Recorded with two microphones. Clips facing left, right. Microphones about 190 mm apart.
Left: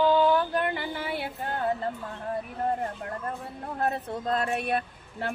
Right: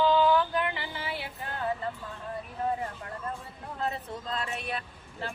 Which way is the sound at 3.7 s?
55° left (ahead or behind).